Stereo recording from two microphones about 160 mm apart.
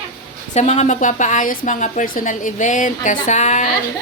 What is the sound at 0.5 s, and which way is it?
Speech, 45° left (ahead or behind).